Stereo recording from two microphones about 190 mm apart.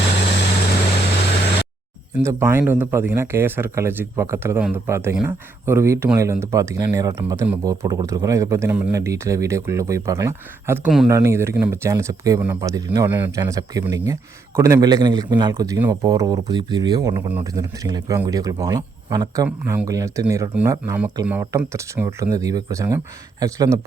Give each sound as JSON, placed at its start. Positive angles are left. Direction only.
{"t": 2.1, "sound": "speech", "side_deg": -10}
{"t": 10.8, "sound": "speech", "side_deg": 0}
{"t": 11.1, "sound": "speech", "side_deg": -15}